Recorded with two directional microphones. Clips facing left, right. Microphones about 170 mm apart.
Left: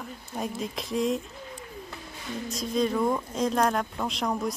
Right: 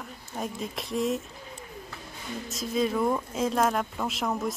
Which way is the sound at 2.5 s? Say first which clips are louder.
Left 1 dB; centre (ahead or behind).